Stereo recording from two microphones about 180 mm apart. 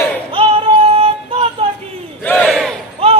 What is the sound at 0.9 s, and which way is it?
Music, 30° right (ahead or behind).